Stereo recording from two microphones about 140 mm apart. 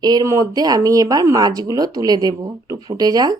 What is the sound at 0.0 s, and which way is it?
Speech, 30° right (ahead or behind).